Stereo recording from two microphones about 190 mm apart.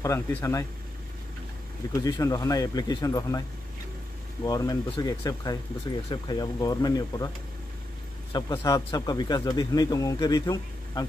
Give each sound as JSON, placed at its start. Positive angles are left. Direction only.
{"t": 0.0, "sound": "speech", "side_deg": 15}
{"t": 1.9, "sound": "speech", "side_deg": 20}
{"t": 4.5, "sound": "speech", "side_deg": 20}
{"t": 8.3, "sound": "speech", "side_deg": 20}